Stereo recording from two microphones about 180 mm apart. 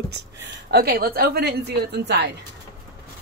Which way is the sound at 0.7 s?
60° right (ahead or behind).